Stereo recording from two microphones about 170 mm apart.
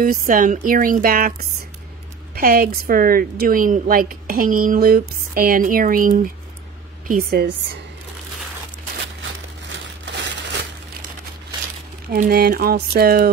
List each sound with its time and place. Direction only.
0.0 s a woman's voice: 55° right (ahead or behind)
2.3 s a woman's voice: 60° right (ahead or behind)
9.7 s crumpling: 90° right
12.2 s a woman's voice: 65° right (ahead or behind)